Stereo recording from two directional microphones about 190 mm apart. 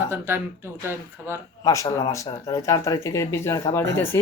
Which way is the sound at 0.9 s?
10° right (ahead or behind).